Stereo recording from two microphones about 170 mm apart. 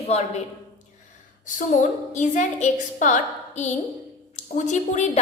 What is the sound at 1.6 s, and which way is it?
A woman's voice, 45° left (ahead or behind).